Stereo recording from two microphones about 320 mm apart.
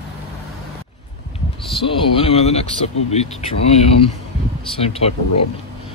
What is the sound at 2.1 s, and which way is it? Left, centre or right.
Speech, centre.